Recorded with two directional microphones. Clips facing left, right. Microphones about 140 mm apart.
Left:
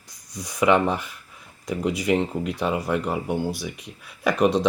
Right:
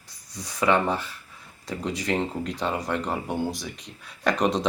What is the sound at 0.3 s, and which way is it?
Speech, 15° left (ahead or behind).